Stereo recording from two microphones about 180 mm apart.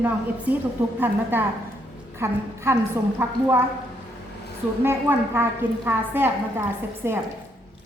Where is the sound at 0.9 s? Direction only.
10° right (ahead or behind).